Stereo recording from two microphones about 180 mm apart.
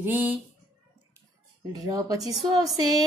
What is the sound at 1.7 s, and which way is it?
Speech, 20° right (ahead or behind).